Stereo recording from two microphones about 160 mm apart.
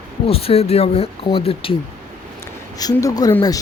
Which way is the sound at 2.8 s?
20° left (ahead or behind).